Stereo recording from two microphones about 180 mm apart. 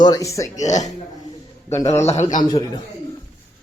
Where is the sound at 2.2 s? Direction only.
25° left (ahead or behind).